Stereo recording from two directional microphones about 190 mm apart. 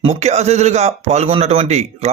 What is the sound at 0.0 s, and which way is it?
A man's voice, 35° right (ahead or behind).